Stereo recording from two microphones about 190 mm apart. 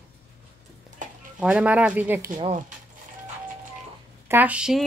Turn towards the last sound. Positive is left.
turn(degrees=-5)  # may be behind; listen again after turning